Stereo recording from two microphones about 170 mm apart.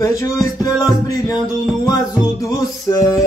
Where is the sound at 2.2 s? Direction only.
20° left (ahead or behind).